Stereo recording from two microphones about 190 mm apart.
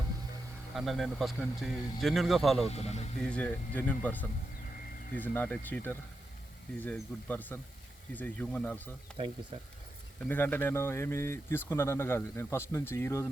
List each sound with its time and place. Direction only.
0.7 s speech: centre (ahead or behind)
2.6 s speech: 35° left (ahead or behind)
3.2 s speech: 5° left (ahead or behind)
10.2 s speech: 10° left (ahead or behind)